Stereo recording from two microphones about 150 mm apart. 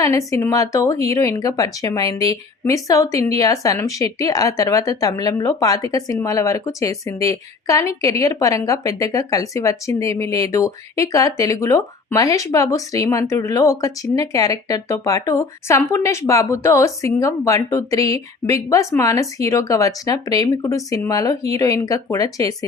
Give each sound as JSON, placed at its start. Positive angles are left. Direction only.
{"t": 0.0, "sound": "a woman's voice", "side_deg": 20}